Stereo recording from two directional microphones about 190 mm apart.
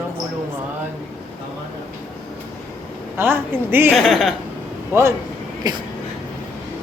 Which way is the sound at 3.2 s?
10° right (ahead or behind).